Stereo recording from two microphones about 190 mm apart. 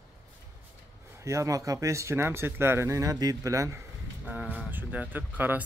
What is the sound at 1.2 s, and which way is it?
Speech, 15° right (ahead or behind).